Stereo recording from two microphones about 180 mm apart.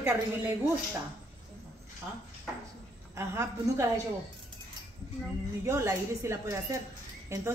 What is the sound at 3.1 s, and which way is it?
Speech, 15° right (ahead or behind).